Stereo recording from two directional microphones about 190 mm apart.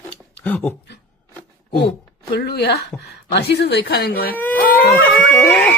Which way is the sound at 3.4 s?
60° left (ahead or behind).